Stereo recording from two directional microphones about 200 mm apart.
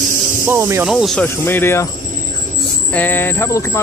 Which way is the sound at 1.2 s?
10° left (ahead or behind).